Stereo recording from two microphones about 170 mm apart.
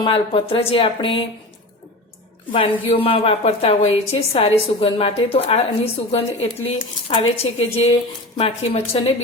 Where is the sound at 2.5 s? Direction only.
30° left (ahead or behind).